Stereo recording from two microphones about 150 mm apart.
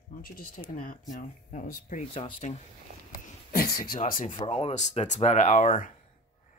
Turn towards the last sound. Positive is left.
turn(degrees=55)  # may be behind; listen again after turning